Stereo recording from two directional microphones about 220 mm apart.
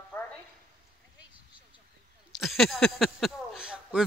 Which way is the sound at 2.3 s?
Centre (ahead or behind).